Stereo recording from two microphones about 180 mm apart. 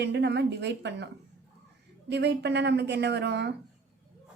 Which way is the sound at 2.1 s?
70° right (ahead or behind).